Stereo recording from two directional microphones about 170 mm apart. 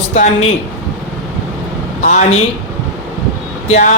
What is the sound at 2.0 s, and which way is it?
Speech, 45° left (ahead or behind).